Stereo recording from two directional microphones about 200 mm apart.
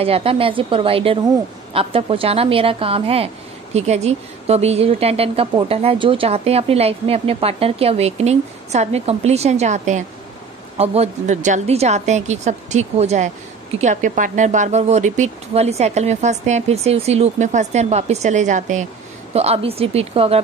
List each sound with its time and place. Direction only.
0.0 s a woman's voice: 30° right (ahead or behind)